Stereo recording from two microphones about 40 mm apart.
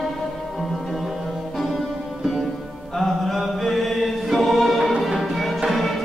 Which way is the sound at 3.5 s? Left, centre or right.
Centre.